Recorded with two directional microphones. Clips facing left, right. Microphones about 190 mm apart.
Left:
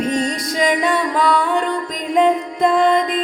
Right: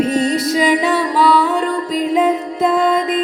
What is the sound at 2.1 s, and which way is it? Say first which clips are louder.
Music: left 2 dB; 5° right (ahead or behind).